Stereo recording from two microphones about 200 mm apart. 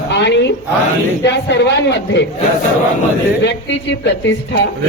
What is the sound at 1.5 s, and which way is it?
Speech, 60° left (ahead or behind).